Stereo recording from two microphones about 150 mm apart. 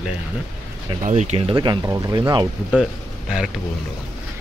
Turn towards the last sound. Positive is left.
turn(degrees=0)  # may be behind; listen again after turning